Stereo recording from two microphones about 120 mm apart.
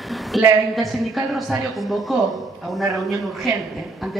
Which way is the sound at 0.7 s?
Centre (ahead or behind).